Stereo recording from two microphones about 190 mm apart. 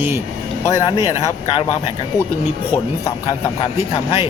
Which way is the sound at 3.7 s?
30° left (ahead or behind).